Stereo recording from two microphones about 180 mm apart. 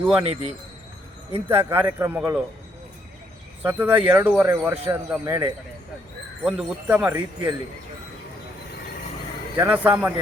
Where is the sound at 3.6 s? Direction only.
10° right (ahead or behind).